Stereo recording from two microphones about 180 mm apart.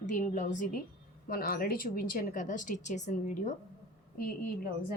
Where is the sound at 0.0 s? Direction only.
45° left (ahead or behind).